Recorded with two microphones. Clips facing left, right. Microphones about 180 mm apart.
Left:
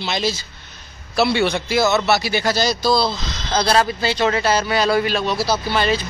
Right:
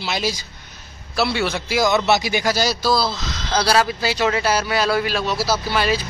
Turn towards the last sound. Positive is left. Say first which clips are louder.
# left 1 dB
turn(degrees=-5)  # may be behind; listen again after turning